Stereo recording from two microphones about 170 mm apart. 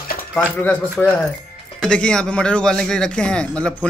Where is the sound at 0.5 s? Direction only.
10° left (ahead or behind).